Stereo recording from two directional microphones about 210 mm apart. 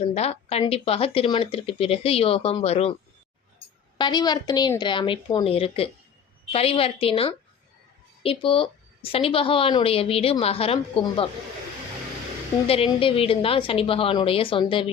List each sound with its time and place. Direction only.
0.1 s speech: 30° left (ahead or behind)
3.9 s speech: 20° left (ahead or behind)
12.6 s speech: 25° left (ahead or behind)